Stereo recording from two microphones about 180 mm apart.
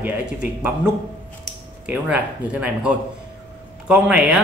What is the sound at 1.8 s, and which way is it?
Speech, 5° right (ahead or behind).